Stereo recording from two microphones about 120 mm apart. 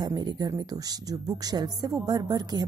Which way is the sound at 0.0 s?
35° right (ahead or behind).